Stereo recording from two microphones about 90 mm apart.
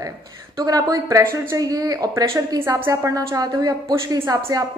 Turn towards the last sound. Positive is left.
turn(degrees=-40)  # may be behind; listen again after turning